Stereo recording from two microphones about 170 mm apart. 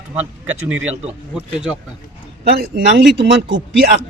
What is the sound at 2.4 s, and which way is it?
Speech, 65° right (ahead or behind).